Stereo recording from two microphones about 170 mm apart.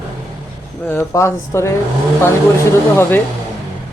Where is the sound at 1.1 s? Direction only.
15° left (ahead or behind).